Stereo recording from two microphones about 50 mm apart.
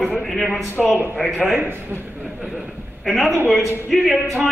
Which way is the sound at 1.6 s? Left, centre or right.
Right.